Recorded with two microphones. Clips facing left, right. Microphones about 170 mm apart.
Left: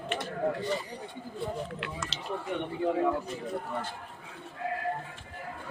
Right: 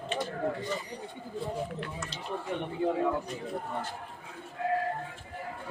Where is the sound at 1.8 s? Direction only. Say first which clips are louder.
Even; 90° left.